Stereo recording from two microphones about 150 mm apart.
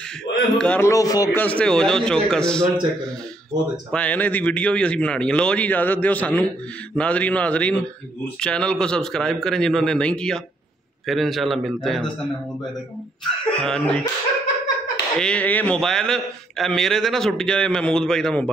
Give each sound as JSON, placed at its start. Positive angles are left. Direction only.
{"t": 0.4, "sound": "a man's voice", "side_deg": 5}
{"t": 0.8, "sound": "speech", "side_deg": 25}
{"t": 1.3, "sound": "a man's voice", "side_deg": 10}
{"t": 3.9, "sound": "a man's voice", "side_deg": 10}
{"t": 13.6, "sound": "a man's voice", "side_deg": 5}
{"t": 15.1, "sound": "a man's voice", "side_deg": 5}